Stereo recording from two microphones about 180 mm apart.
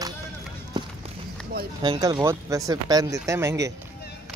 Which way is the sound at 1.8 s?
25° right (ahead or behind).